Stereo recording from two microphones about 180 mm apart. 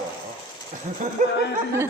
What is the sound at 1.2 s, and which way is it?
Speech, 45° right (ahead or behind).